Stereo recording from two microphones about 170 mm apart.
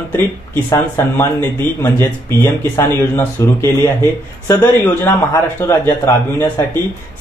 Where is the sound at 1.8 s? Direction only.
15° left (ahead or behind).